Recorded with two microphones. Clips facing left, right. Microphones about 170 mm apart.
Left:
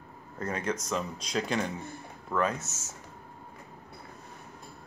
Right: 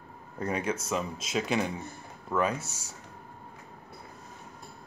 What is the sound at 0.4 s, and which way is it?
Speech, 10° right (ahead or behind).